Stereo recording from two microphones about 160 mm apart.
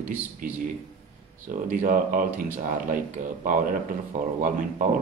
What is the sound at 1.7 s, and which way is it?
Speech, 55° right (ahead or behind).